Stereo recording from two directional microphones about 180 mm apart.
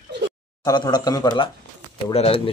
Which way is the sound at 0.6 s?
25° left (ahead or behind).